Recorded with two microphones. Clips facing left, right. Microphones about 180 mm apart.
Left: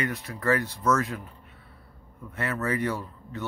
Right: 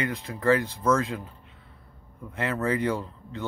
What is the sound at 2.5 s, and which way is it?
Speech, 25° right (ahead or behind).